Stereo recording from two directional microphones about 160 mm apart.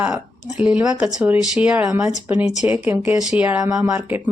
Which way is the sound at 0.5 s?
10° right (ahead or behind).